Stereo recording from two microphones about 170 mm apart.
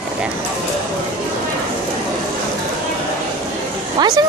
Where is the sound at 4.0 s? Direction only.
25° right (ahead or behind).